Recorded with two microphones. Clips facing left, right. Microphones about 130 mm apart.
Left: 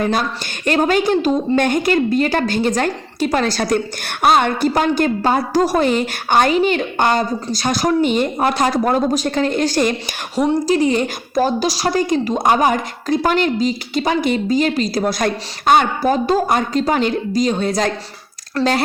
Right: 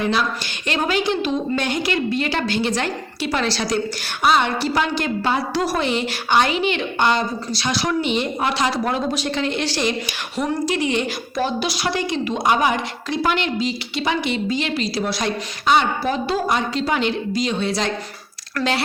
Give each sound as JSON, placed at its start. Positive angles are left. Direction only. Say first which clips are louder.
{"t": 0.0, "sound": "speech", "louder": "left 2 dB", "side_deg": 45}
{"t": 18.6, "sound": "speech", "louder": "left 5 dB", "side_deg": 25}